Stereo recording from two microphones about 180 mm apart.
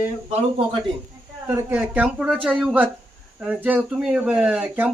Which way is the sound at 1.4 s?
10° right (ahead or behind).